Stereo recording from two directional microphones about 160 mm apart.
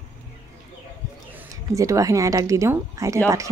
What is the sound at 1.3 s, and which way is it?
Speech, 15° right (ahead or behind).